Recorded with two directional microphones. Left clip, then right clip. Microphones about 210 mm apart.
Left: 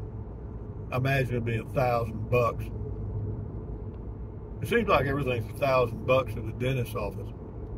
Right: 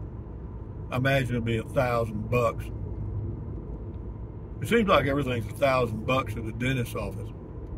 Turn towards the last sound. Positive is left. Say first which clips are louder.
# even
turn(degrees=-20)  # may be behind; listen again after turning